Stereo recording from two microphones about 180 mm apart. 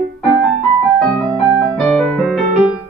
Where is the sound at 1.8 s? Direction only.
5° left (ahead or behind).